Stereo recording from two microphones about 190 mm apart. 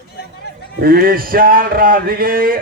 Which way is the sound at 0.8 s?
50° right (ahead or behind).